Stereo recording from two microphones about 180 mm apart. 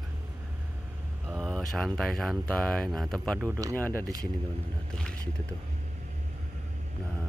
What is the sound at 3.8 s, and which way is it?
Speech, 10° left (ahead or behind).